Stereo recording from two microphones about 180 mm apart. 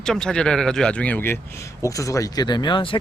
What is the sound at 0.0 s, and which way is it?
Speech, 5° left (ahead or behind).